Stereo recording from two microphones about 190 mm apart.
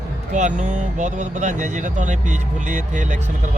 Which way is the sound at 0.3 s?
40° right (ahead or behind).